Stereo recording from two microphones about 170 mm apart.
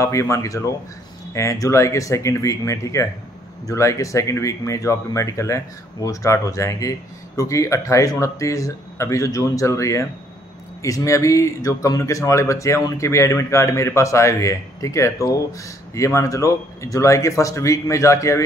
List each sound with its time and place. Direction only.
0.0 s speech: 15° left (ahead or behind)